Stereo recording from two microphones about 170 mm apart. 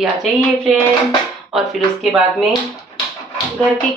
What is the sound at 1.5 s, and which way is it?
Speech, centre (ahead or behind).